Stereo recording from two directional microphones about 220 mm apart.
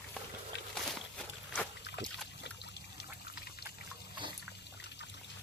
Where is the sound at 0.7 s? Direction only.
Centre (ahead or behind).